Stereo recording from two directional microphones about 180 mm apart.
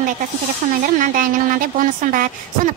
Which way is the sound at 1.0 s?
50° right (ahead or behind).